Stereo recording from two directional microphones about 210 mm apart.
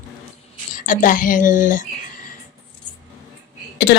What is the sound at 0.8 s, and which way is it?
A woman's voice, 40° left (ahead or behind).